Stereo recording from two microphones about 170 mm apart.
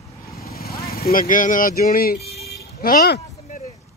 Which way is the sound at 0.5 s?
65° left (ahead or behind).